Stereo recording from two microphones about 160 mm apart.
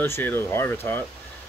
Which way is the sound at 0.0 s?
15° left (ahead or behind).